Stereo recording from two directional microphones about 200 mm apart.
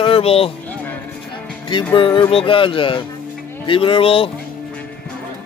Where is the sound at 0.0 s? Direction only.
30° left (ahead or behind).